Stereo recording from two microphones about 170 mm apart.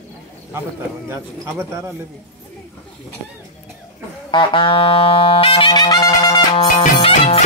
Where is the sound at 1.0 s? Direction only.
15° right (ahead or behind).